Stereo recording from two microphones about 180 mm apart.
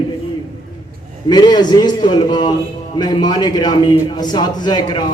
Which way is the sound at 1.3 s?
25° left (ahead or behind).